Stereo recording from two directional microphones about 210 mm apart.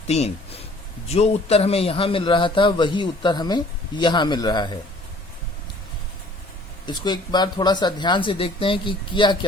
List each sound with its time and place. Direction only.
1.0 s a man's voice: 30° left (ahead or behind)
6.8 s a man's voice: 20° left (ahead or behind)